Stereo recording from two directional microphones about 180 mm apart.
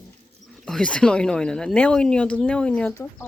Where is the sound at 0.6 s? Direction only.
5° left (ahead or behind).